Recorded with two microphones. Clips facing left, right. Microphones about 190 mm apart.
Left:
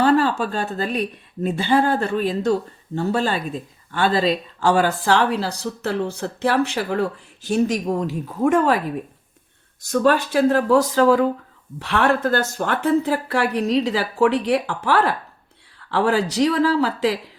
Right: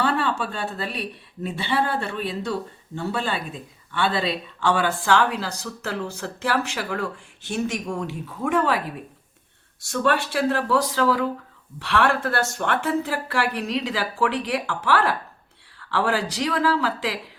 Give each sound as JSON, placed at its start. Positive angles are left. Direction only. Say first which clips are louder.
{"t": 0.0, "sound": "speech", "louder": "left 6 dB", "side_deg": 40}
{"t": 9.8, "sound": "speech", "louder": "left 5 dB", "side_deg": 35}